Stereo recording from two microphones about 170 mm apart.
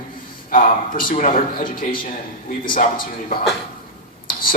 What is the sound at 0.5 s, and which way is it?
Speech, 55° left (ahead or behind).